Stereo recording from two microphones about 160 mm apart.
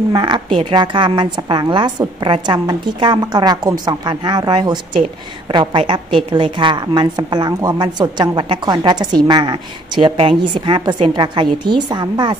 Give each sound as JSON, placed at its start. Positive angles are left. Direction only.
{"t": 0.1, "sound": "a woman's voice", "side_deg": -30}